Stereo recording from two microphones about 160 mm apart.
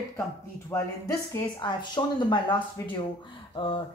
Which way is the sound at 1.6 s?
25° left (ahead or behind).